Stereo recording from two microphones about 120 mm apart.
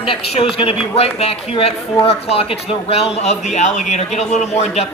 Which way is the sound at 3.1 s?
65° left (ahead or behind).